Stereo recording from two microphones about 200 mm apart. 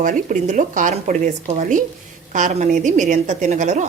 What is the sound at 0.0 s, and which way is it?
A woman's voice, 40° right (ahead or behind).